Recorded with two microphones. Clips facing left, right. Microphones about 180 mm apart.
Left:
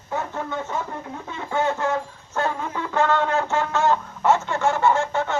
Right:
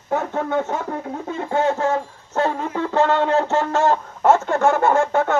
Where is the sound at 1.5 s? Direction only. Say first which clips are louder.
Right 3 dB; 45° right (ahead or behind).